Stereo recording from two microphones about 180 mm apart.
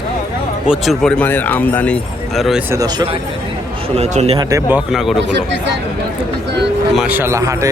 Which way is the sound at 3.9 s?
35° right (ahead or behind).